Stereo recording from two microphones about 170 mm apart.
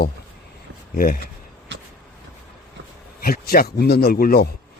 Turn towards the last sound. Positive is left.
turn(degrees=60)  # may be behind; listen again after turning